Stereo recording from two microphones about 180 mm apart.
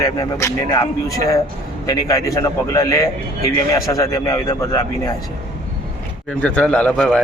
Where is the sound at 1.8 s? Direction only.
20° left (ahead or behind).